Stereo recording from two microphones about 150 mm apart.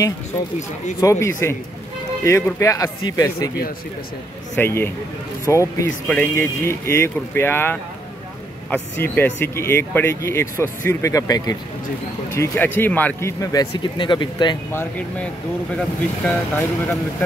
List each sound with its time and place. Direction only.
1.0 s speech: 20° left (ahead or behind)
4.6 s speech: 15° left (ahead or behind)
13.4 s speech: 25° left (ahead or behind)
14.7 s speech: 10° left (ahead or behind)
16.3 s speech: 15° left (ahead or behind)